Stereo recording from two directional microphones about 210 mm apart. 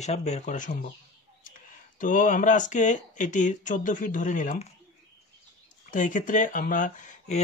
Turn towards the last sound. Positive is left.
turn(degrees=40)  # may be behind; listen again after turning